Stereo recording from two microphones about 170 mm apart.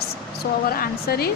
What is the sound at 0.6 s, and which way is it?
Speech, 60° left (ahead or behind).